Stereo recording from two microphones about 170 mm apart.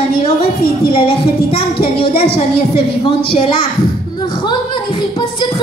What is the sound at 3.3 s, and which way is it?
Speech, 30° left (ahead or behind).